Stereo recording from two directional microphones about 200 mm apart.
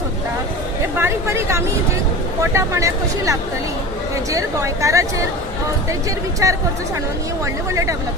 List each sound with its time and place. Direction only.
0.9 s speech: 10° right (ahead or behind)
6.4 s speech: 15° right (ahead or behind)